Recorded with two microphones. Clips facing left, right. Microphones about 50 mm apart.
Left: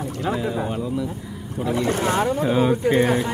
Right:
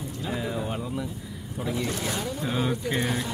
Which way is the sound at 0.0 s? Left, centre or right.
Left.